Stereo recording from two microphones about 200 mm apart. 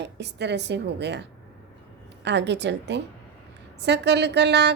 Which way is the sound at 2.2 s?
60° right (ahead or behind).